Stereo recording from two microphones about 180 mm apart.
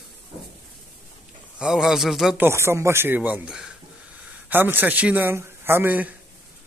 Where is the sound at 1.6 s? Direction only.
5° right (ahead or behind).